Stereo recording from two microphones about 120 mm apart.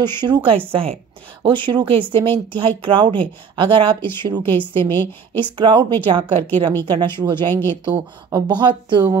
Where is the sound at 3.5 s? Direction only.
40° right (ahead or behind).